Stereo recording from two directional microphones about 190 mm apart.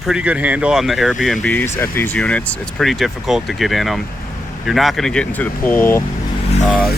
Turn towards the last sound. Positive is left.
turn(degrees=0)  # may be behind; listen again after turning